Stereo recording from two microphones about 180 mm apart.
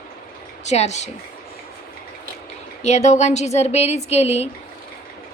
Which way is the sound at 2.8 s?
40° left (ahead or behind).